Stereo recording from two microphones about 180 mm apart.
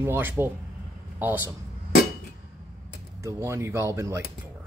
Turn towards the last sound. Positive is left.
turn(degrees=-15)  # may be behind; listen again after turning